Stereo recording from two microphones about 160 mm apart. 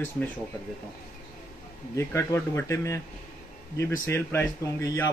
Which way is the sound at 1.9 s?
15° left (ahead or behind).